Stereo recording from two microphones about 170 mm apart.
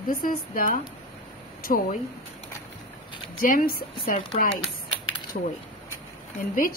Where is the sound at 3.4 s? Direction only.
60° left (ahead or behind).